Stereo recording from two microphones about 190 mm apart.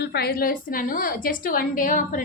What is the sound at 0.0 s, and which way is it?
A woman's voice, 60° left (ahead or behind).